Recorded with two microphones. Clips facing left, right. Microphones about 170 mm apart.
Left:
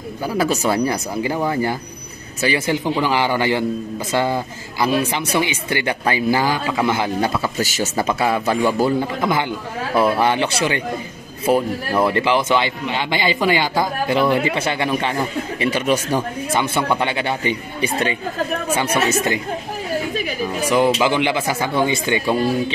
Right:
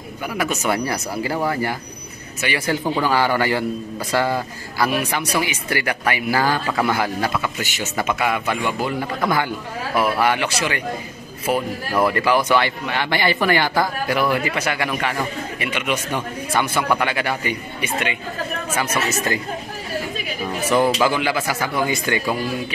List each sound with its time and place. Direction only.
0.3 s a man's voice: 30° left (ahead or behind)
6.4 s a man's voice: 15° left (ahead or behind); by 8.9 s 35° left (ahead or behind)
9.2 s a man's voice: 20° left (ahead or behind); by 16.2 s 35° left (ahead or behind)
16.5 s a man's voice: 25° left (ahead or behind)
20.7 s a man's voice: 20° left (ahead or behind)